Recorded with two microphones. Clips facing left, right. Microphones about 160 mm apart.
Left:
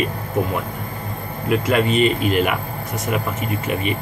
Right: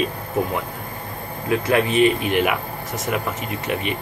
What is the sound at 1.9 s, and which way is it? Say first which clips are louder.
Speech: even; 70° right (ahead or behind).